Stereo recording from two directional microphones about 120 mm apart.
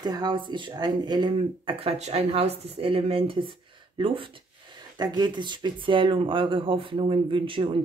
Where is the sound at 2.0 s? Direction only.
60° right (ahead or behind).